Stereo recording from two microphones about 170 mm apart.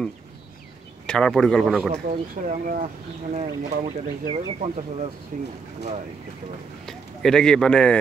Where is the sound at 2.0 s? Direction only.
55° right (ahead or behind).